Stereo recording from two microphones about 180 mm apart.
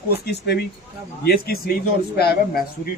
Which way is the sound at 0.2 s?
65° left (ahead or behind).